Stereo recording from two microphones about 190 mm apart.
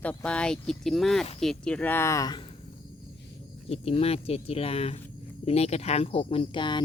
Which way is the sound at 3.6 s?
30° left (ahead or behind).